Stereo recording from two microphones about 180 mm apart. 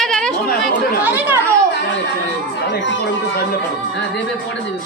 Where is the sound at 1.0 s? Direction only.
10° right (ahead or behind).